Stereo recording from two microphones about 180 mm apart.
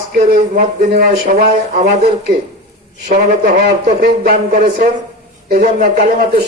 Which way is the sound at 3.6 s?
60° right (ahead or behind).